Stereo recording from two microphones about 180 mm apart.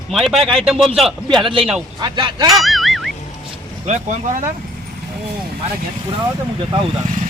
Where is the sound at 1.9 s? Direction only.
25° right (ahead or behind).